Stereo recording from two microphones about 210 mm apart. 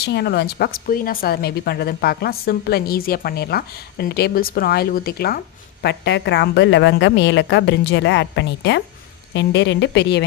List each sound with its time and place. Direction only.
0.0 s a woman's voice: 50° left (ahead or behind)